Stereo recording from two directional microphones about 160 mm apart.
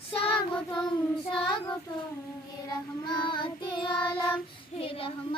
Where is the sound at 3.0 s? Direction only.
30° left (ahead or behind).